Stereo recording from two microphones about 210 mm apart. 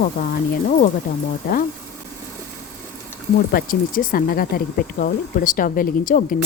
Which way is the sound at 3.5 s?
40° left (ahead or behind).